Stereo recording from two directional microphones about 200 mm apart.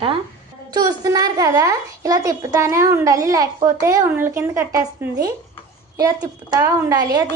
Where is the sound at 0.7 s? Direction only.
20° right (ahead or behind).